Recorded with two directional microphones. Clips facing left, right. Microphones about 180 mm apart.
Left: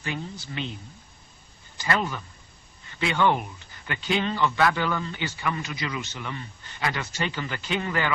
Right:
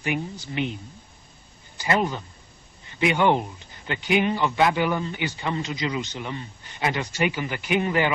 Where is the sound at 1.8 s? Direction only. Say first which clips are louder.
Right 3 dB; 20° right (ahead or behind).